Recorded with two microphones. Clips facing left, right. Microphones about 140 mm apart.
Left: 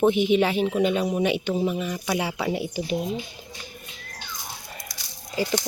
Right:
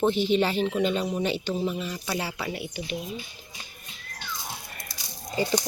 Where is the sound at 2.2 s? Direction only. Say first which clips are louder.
Left 5 dB; centre (ahead or behind).